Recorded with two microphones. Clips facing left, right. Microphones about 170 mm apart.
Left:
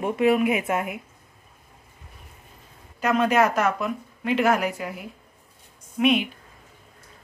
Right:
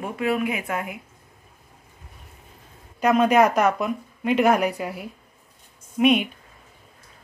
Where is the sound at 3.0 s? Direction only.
15° right (ahead or behind).